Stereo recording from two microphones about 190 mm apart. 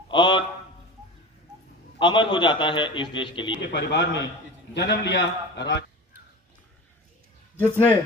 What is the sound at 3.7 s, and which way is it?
A man's voice, 65° left (ahead or behind).